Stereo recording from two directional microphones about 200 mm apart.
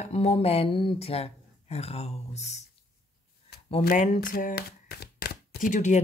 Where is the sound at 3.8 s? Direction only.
40° left (ahead or behind).